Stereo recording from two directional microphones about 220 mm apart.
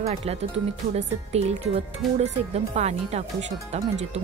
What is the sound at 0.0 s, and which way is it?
Speech, 30° right (ahead or behind).